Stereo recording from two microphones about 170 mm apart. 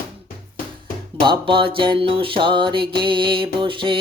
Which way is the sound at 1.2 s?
30° right (ahead or behind).